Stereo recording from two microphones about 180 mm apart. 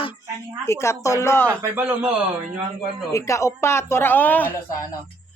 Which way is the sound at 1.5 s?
10° right (ahead or behind).